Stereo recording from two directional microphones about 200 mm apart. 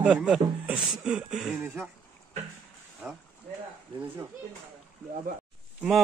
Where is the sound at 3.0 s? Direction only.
10° right (ahead or behind).